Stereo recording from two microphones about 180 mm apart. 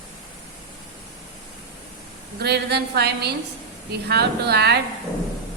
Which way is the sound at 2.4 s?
65° right (ahead or behind).